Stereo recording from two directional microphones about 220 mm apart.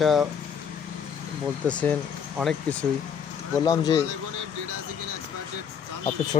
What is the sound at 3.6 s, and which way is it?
Speech, 15° left (ahead or behind).